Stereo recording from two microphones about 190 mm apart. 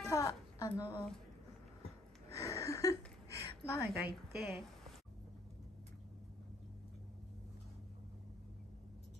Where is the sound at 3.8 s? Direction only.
55° right (ahead or behind).